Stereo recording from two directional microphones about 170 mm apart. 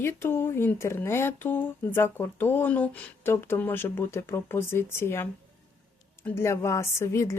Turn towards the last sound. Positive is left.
turn(degrees=15)  # may be behind; listen again after turning